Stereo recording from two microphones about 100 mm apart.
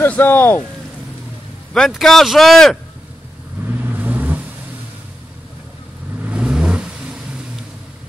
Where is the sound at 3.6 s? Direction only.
15° right (ahead or behind).